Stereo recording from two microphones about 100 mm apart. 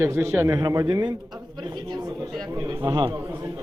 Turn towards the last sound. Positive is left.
turn(degrees=-45)  # may be behind; listen again after turning